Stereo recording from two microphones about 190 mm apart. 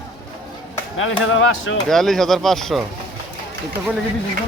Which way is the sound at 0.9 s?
90° left.